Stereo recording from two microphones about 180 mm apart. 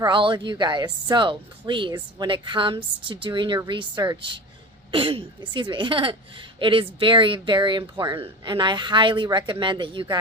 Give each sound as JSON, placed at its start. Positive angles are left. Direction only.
{"t": 0.0, "sound": "a woman's voice", "side_deg": -25}